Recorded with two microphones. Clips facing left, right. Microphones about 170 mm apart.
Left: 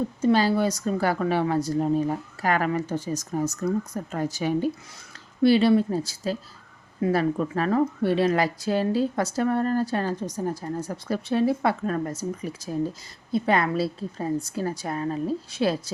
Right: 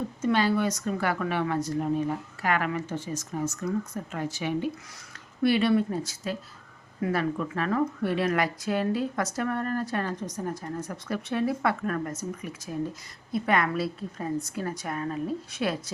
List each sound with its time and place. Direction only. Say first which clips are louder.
0.2 s speech: left 3 dB; 35° left (ahead or behind)